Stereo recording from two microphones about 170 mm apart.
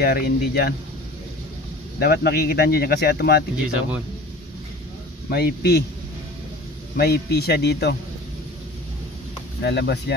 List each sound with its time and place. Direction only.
0.0 s speech: 65° left (ahead or behind)
2.0 s speech: 65° left (ahead or behind)
5.3 s speech: 70° left (ahead or behind)
7.0 s speech: 70° left (ahead or behind)
9.6 s speech: 80° left